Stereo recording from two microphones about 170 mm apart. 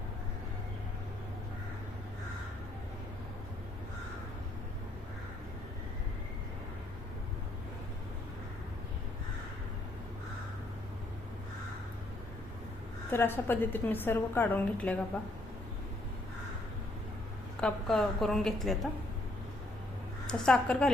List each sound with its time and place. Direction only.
13.1 s a woman's voice: 10° left (ahead or behind)
17.6 s a woman's voice: 5° left (ahead or behind)
20.2 s a woman's voice: 5° left (ahead or behind)